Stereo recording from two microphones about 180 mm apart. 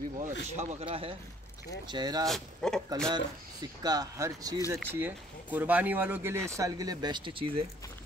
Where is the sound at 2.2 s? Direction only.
Centre (ahead or behind).